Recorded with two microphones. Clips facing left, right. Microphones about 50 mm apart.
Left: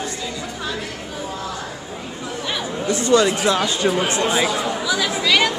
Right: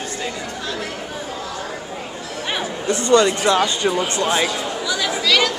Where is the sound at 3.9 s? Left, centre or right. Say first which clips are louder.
Left 1 dB; centre.